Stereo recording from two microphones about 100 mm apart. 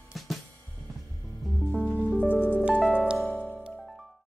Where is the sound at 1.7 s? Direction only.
10° left (ahead or behind).